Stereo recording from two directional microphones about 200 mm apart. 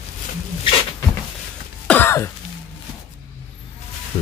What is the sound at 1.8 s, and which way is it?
Throat clearing, 10° left (ahead or behind).